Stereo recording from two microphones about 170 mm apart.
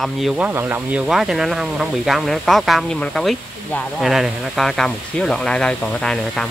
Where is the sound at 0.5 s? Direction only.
10° right (ahead or behind).